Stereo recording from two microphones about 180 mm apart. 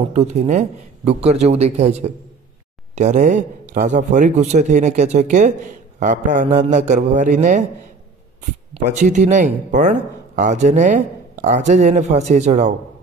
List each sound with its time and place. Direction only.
0.1 s speech: 40° right (ahead or behind)
8.8 s speech: 40° right (ahead or behind)